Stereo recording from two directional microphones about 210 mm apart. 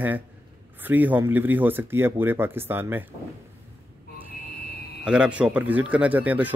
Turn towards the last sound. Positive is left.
turn(degrees=-5)  # may be behind; listen again after turning